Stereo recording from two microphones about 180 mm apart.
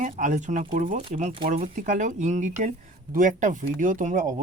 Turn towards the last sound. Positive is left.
turn(degrees=-45)  # may be behind; listen again after turning